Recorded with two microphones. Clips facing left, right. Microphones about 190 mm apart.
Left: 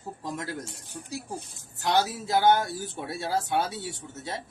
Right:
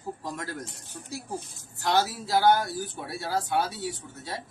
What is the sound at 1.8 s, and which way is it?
Speech, 20° left (ahead or behind).